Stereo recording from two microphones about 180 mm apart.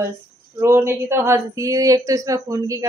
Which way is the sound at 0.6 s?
15° right (ahead or behind).